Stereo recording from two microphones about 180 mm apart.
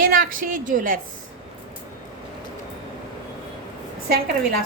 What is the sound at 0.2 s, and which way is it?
Speech, 50° right (ahead or behind).